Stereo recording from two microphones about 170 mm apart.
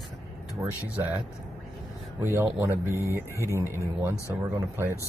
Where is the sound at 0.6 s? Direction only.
15° right (ahead or behind).